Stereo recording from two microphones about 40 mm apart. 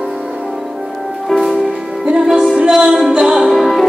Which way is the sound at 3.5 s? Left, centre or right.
Centre.